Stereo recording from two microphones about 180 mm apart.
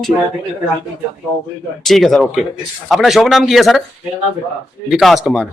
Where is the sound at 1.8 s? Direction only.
Centre (ahead or behind).